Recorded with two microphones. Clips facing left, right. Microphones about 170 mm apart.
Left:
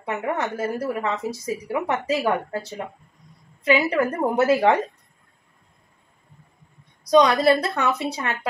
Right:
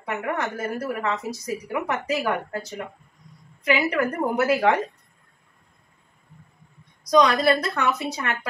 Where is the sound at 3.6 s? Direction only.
25° left (ahead or behind).